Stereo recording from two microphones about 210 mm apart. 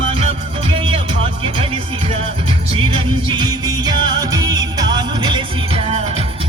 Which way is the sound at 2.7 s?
25° right (ahead or behind).